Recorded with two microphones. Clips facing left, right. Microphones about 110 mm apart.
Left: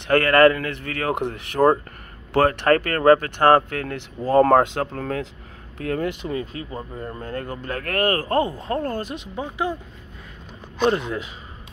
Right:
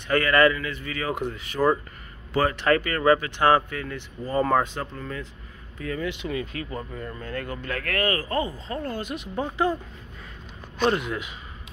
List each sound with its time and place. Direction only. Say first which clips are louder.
0.0 s speech: left 5 dB; 55° left (ahead or behind); by 5.3 s 75° left (ahead or behind)
5.8 s speech: left 5 dB; 55° left (ahead or behind)
6.2 s speech: left 2 dB; 35° left (ahead or behind)
9.3 s speech: right 2 dB; 15° left (ahead or behind)
10.8 s speech: left 3 dB; 30° left (ahead or behind)